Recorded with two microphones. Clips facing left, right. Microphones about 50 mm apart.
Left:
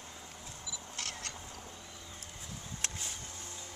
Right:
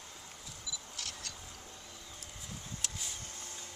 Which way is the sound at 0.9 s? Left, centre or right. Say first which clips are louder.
Left 5 dB; left.